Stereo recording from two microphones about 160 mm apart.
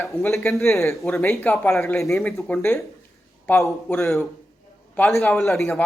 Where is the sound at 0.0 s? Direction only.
15° left (ahead or behind).